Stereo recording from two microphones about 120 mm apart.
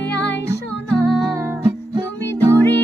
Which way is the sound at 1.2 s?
25° right (ahead or behind).